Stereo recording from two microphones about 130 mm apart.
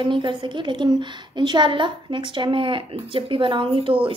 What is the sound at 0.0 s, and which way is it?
Speech, 40° right (ahead or behind).